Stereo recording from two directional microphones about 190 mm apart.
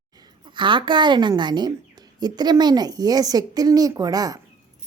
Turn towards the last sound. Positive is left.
turn(degrees=-20)  # may be behind; listen again after turning